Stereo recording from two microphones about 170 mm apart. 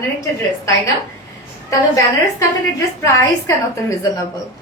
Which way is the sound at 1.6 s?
20° left (ahead or behind).